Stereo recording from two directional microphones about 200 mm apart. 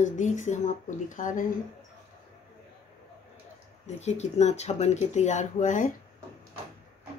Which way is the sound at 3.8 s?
35° left (ahead or behind).